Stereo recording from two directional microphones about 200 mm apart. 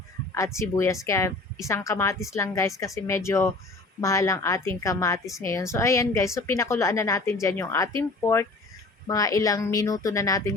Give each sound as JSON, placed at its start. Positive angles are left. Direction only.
{"t": 0.3, "sound": "a woman's voice", "side_deg": 15}